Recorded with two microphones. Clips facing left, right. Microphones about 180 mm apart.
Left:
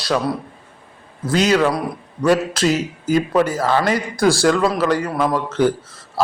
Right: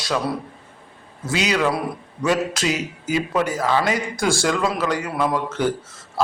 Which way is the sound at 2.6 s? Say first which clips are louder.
Left 5 dB; 45° left (ahead or behind).